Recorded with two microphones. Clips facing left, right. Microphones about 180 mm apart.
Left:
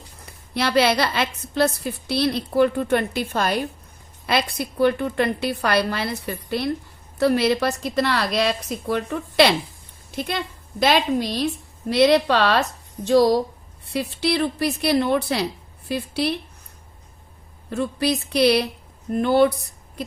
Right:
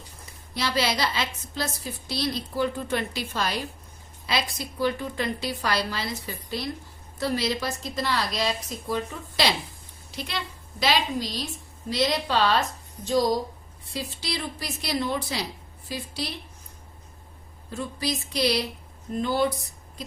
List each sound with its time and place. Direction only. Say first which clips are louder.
0.5 s a woman's voice: left 7 dB; 60° left (ahead or behind)
10.1 s a woman's voice: left 7 dB; 50° left (ahead or behind)
17.7 s a woman's voice: left 8 dB; 65° left (ahead or behind)